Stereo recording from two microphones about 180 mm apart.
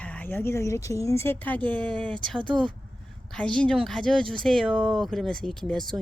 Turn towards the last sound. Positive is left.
turn(degrees=5)  # may be behind; listen again after turning